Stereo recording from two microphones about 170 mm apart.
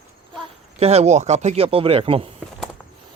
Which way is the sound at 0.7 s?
40° right (ahead or behind).